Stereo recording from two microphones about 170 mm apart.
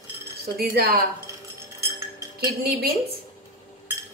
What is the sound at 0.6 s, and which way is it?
Speech, 65° right (ahead or behind).